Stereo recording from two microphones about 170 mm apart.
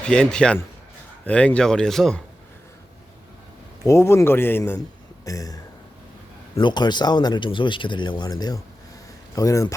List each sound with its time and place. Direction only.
0.0 s speech: 5° left (ahead or behind)
3.8 s speech: 15° left (ahead or behind)
6.6 s speech: 25° left (ahead or behind)